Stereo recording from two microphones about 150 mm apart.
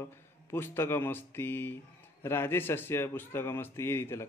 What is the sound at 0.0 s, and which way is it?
A man's voice, 15° left (ahead or behind).